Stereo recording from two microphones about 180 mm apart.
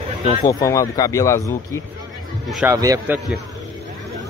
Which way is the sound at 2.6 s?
20° right (ahead or behind).